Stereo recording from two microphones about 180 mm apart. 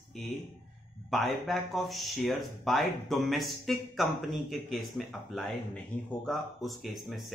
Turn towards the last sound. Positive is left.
turn(degrees=0)  # may be behind; listen again after turning